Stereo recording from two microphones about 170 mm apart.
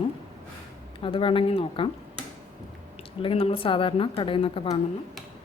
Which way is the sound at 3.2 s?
35° left (ahead or behind).